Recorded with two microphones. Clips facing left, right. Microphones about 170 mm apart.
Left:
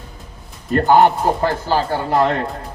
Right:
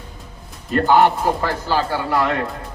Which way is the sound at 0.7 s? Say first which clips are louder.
Left 2 dB; 45° left (ahead or behind).